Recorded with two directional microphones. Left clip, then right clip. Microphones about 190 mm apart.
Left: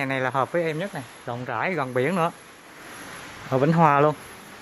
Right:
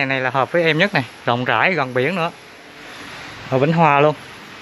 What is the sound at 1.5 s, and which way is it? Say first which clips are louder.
Speech: right 3 dB; centre (ahead or behind).